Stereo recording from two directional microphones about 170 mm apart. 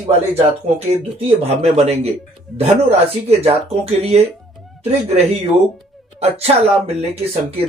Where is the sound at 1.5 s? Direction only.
40° right (ahead or behind).